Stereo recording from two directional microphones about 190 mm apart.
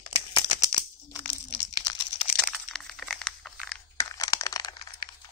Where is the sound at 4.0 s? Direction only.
20° left (ahead or behind).